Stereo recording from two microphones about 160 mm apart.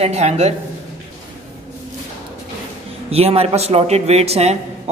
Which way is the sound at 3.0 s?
40° right (ahead or behind).